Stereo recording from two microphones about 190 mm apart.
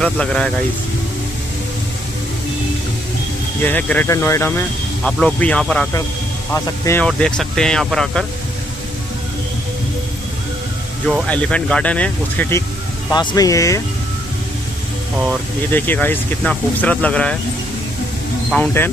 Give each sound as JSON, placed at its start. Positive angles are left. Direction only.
{"t": 0.0, "sound": "speech", "side_deg": 5}
{"t": 3.6, "sound": "speech", "side_deg": 10}
{"t": 11.1, "sound": "speech", "side_deg": 5}
{"t": 13.1, "sound": "speech", "side_deg": 25}
{"t": 15.7, "sound": "speech", "side_deg": 10}
{"t": 18.5, "sound": "speech", "side_deg": 10}